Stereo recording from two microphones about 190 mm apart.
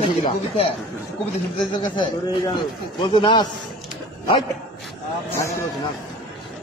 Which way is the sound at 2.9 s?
25° left (ahead or behind).